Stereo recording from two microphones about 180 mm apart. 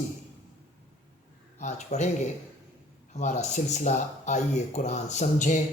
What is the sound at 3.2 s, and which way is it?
Speech, 40° left (ahead or behind).